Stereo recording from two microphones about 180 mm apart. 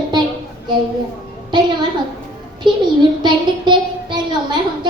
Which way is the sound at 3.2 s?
25° right (ahead or behind).